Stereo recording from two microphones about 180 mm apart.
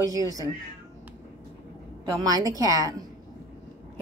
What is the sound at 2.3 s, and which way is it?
Speech, 20° right (ahead or behind).